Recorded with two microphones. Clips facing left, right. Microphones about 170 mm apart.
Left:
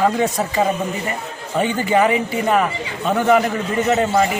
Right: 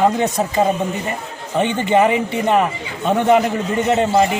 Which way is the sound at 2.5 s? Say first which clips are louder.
Right 2 dB; 25° right (ahead or behind).